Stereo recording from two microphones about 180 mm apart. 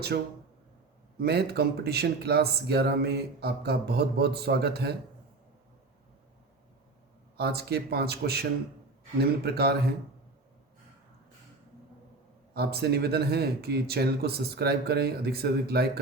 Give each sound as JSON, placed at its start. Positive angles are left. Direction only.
{"t": 1.2, "sound": "speech", "side_deg": -60}
{"t": 7.3, "sound": "speech", "side_deg": -60}
{"t": 12.5, "sound": "speech", "side_deg": -60}